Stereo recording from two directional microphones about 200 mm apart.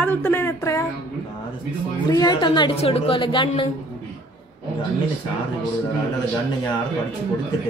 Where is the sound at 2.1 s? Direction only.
20° left (ahead or behind).